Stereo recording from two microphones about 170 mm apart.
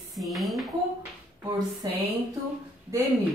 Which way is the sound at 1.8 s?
25° right (ahead or behind).